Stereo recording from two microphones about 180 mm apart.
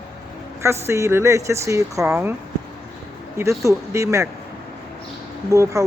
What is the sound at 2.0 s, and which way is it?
Speech, 5° right (ahead or behind).